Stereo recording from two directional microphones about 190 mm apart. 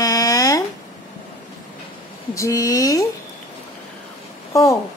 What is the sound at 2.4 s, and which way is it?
Speech, 15° left (ahead or behind).